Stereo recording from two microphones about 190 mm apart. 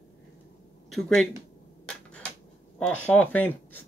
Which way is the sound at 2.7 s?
5° left (ahead or behind).